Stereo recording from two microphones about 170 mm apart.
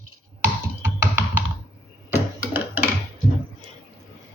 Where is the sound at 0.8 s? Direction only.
15° right (ahead or behind).